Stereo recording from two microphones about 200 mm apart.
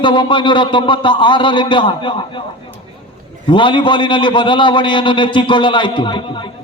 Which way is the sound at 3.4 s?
25° left (ahead or behind).